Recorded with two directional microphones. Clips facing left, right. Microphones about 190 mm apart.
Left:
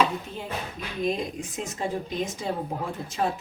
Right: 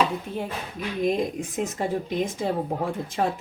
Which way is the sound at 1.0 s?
55° right (ahead or behind).